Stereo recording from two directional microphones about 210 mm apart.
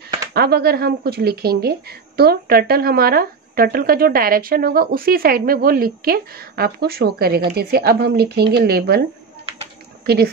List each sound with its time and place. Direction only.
0.3 s speech: 50° right (ahead or behind)
9.5 s a sound: 25° right (ahead or behind)
10.0 s speech: 50° right (ahead or behind)